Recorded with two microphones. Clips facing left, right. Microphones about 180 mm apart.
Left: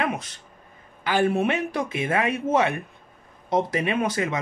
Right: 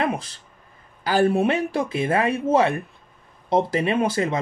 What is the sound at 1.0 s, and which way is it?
Speech, 35° right (ahead or behind).